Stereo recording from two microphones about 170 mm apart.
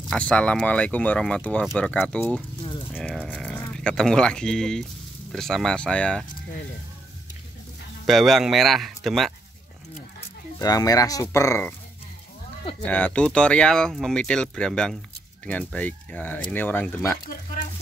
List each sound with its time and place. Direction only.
0.1 s speech: 5° left (ahead or behind)
8.1 s speech: centre (ahead or behind)
10.6 s speech: 20° left (ahead or behind)
12.8 s speech: 10° left (ahead or behind)